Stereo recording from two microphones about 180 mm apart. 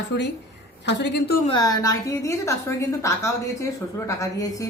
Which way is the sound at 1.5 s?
20° left (ahead or behind).